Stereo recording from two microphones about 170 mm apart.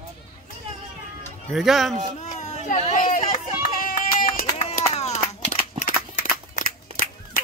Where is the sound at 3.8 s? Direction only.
55° left (ahead or behind).